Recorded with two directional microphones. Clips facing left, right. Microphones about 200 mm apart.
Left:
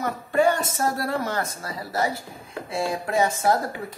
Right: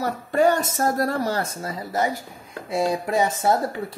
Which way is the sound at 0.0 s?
40° right (ahead or behind).